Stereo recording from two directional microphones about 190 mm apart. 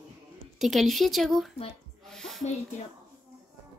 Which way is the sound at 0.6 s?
Centre (ahead or behind).